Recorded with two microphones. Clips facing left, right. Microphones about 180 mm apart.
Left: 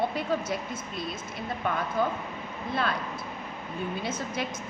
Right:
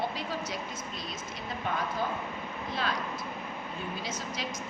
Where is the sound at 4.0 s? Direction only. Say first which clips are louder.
Left 5 dB; 55° left (ahead or behind).